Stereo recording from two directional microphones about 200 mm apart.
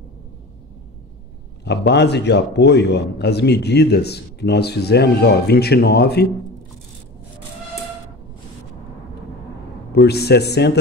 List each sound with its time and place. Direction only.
1.6 s a man's voice: 55° left (ahead or behind)
9.9 s a man's voice: 55° left (ahead or behind)